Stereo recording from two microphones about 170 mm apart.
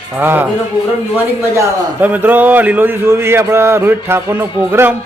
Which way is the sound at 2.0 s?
10° right (ahead or behind).